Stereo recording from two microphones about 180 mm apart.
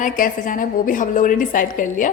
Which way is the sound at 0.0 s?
45° left (ahead or behind).